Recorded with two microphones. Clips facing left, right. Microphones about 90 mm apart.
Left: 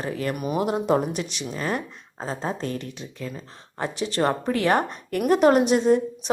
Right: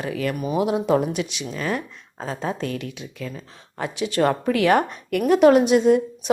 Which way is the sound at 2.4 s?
35° left (ahead or behind).